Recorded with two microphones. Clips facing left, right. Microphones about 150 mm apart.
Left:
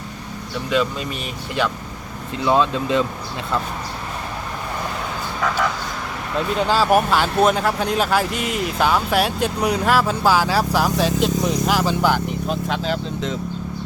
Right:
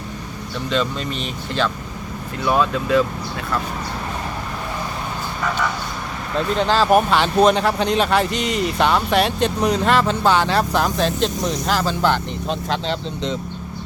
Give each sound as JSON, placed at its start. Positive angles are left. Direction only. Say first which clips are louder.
{"t": 0.7, "sound": "speech", "louder": "left 1 dB", "side_deg": 10}
{"t": 6.6, "sound": "speech", "louder": "right 1 dB", "side_deg": 10}